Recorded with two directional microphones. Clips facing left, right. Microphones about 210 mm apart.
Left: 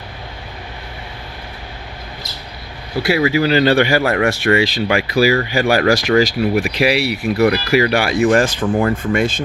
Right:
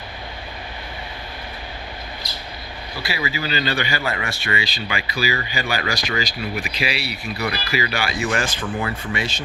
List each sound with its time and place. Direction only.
3.1 s speech: 60° left (ahead or behind); by 7.3 s 85° left
7.4 s speech: 65° left (ahead or behind)
8.3 s speech: 45° left (ahead or behind)